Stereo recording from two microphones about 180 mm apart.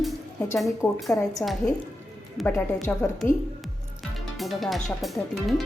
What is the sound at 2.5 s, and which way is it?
Speech, 15° left (ahead or behind).